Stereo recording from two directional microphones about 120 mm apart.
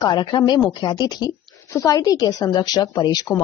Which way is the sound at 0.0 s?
35° left (ahead or behind).